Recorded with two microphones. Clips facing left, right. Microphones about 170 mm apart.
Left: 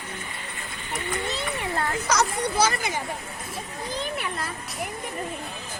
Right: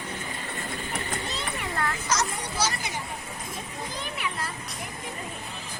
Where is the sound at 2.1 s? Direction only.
60° left (ahead or behind).